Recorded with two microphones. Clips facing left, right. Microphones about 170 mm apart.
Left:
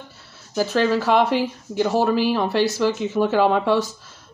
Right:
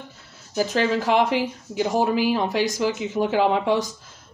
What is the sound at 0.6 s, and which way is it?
Speech, 15° right (ahead or behind).